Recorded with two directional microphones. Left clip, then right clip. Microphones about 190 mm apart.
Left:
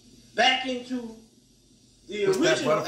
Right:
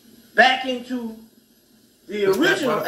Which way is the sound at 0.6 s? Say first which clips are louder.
Right 5 dB; 40° right (ahead or behind).